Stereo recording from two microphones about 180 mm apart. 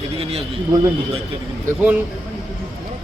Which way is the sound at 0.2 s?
30° right (ahead or behind).